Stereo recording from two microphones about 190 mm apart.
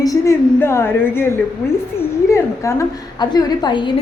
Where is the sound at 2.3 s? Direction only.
15° left (ahead or behind).